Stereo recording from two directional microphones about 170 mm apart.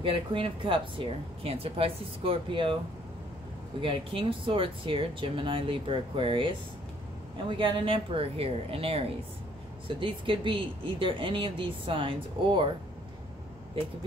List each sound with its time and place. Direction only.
0.0 s speech: 30° right (ahead or behind)
3.8 s speech: 30° right (ahead or behind)